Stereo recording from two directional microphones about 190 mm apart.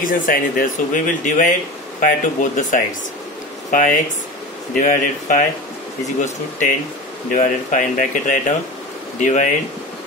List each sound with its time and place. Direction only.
0.0 s speech: 45° left (ahead or behind)
7.2 s speech: 40° left (ahead or behind)